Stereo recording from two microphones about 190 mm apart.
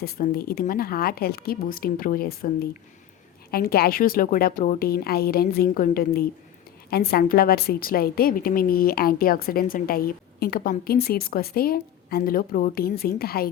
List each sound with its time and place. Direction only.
0.0 s a woman's voice: 50° left (ahead or behind)
3.5 s a woman's voice: 55° left (ahead or behind)